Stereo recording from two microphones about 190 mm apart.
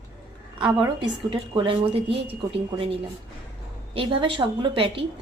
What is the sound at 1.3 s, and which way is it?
A woman's voice, 25° right (ahead or behind).